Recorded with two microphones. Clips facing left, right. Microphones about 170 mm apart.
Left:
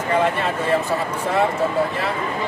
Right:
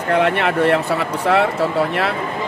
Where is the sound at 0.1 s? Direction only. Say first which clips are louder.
Right 4 dB; 70° right (ahead or behind).